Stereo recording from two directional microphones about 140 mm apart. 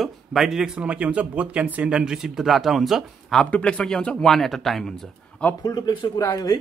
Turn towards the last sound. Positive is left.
turn(degrees=30)  # may be behind; listen again after turning